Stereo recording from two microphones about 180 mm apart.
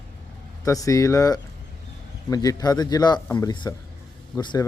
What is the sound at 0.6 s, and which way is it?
Speech, 20° left (ahead or behind).